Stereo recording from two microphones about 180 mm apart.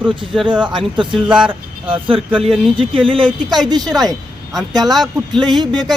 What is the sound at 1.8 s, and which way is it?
Speech, 30° right (ahead or behind).